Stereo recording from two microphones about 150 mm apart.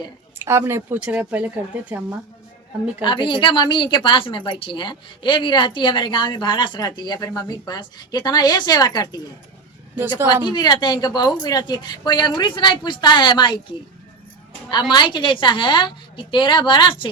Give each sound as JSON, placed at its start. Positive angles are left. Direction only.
{"t": 0.3, "sound": "speech", "side_deg": -15}
{"t": 3.0, "sound": "a woman's voice", "side_deg": 35}
{"t": 10.5, "sound": "a woman's voice", "side_deg": 30}
{"t": 14.7, "sound": "a woman's voice", "side_deg": 30}